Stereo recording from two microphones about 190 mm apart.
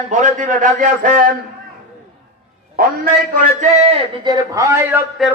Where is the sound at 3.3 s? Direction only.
40° right (ahead or behind).